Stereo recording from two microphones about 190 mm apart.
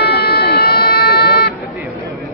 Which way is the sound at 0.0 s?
55° left (ahead or behind).